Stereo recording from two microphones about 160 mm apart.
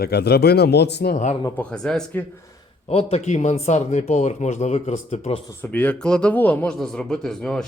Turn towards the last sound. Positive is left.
turn(degrees=5)  # may be behind; listen again after turning